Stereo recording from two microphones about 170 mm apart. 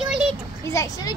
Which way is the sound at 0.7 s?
20° left (ahead or behind).